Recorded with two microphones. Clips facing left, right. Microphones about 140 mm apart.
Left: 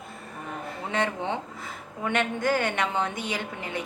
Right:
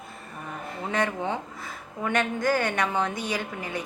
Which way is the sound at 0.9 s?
25° left (ahead or behind).